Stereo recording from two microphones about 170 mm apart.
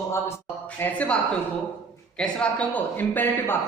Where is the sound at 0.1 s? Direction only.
15° left (ahead or behind).